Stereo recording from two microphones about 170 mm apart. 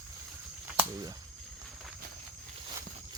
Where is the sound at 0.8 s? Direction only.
20° right (ahead or behind).